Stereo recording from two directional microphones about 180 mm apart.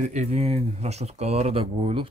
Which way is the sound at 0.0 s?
40° right (ahead or behind).